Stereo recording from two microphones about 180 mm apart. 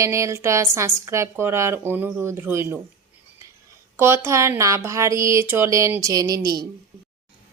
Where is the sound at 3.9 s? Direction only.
15° right (ahead or behind).